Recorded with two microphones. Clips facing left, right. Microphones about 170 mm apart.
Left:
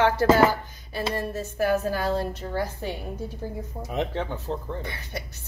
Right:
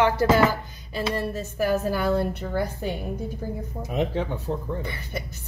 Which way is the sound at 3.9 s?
15° right (ahead or behind).